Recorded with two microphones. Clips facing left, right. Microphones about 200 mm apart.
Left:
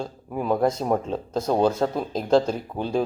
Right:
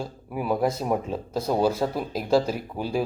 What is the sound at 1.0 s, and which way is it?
Speech, 10° right (ahead or behind).